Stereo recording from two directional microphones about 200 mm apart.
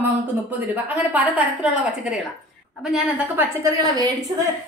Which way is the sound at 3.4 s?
15° right (ahead or behind).